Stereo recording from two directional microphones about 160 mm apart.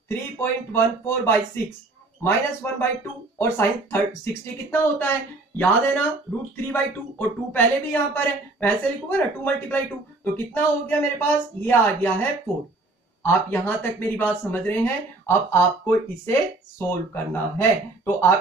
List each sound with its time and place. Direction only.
0.1 s a woman's voice: 15° left (ahead or behind)